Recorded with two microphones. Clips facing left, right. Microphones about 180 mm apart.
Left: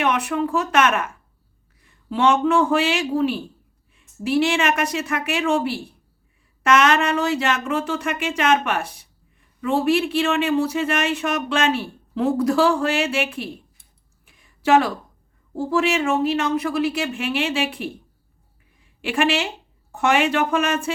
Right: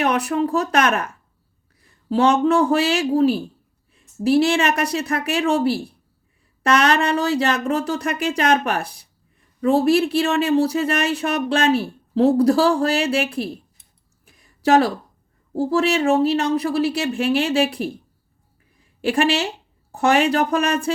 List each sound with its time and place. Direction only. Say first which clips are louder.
0.0 s speech: right 2 dB; 35° right (ahead or behind)
14.3 s a sound: right 1 dB; 40° right (ahead or behind)
15.5 s speech: right 2 dB; 35° right (ahead or behind)
19.0 s speech: right 2 dB; 35° right (ahead or behind)